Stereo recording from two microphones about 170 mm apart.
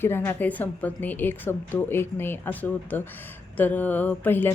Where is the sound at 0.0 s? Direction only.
15° left (ahead or behind).